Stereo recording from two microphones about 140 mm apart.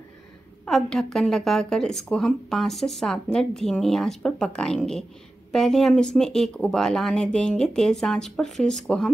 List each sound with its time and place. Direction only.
0.7 s a woman's voice: 5° left (ahead or behind)